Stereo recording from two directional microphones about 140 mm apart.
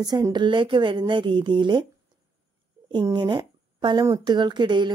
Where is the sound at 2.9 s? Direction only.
35° right (ahead or behind).